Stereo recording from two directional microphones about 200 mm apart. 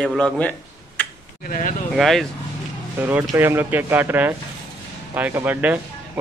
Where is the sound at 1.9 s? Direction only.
Centre (ahead or behind).